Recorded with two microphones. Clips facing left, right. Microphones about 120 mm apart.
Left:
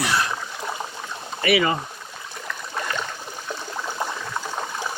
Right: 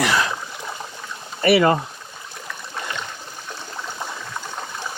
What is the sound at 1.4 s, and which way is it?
Speech, 35° right (ahead or behind).